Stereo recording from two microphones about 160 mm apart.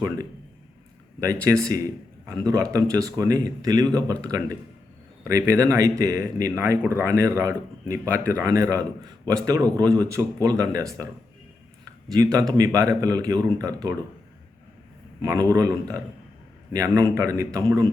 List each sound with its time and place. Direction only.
1.6 s a man's voice: 20° right (ahead or behind)
12.1 s speech: 20° right (ahead or behind)
15.2 s speech: 20° right (ahead or behind)